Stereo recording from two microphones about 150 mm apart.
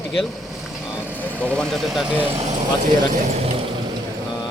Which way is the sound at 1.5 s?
5° left (ahead or behind).